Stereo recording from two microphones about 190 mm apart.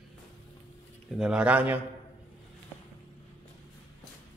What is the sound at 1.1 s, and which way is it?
Speech, 5° right (ahead or behind).